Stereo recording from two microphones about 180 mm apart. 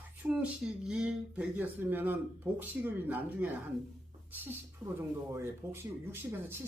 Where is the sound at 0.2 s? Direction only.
5° right (ahead or behind).